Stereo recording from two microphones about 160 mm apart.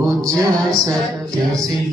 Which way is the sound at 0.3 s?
20° right (ahead or behind).